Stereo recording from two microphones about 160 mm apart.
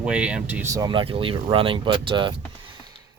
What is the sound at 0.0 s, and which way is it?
Speech, 5° right (ahead or behind).